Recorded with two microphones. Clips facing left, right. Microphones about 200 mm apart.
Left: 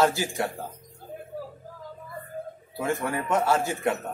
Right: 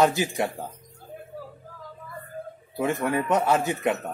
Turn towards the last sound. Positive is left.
turn(degrees=-15)  # may be behind; listen again after turning